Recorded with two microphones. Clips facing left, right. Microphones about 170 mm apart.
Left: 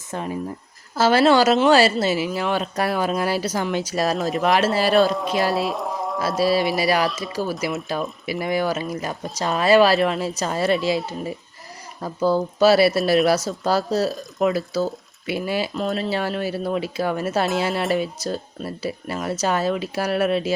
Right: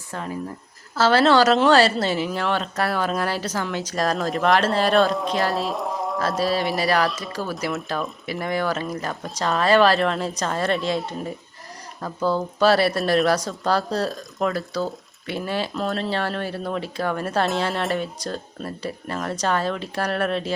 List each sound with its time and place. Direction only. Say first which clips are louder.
0.1 s speech: left 3 dB; 20° left (ahead or behind); by 5.4 s 5° left (ahead or behind)
5.5 s a sound: left 2 dB; 5° left (ahead or behind)
6.1 s speech: left 4 dB; 10° left (ahead or behind)